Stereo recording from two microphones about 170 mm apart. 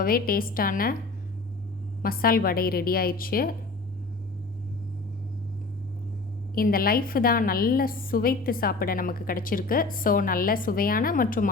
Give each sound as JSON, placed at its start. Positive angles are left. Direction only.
{"t": 0.0, "sound": "a woman's voice", "side_deg": 60}
{"t": 2.0, "sound": "a woman's voice", "side_deg": 60}
{"t": 6.5, "sound": "a woman's voice", "side_deg": 60}